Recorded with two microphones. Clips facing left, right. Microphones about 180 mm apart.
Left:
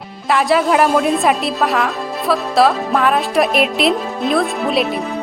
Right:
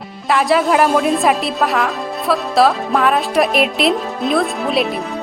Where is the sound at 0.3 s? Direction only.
Centre (ahead or behind).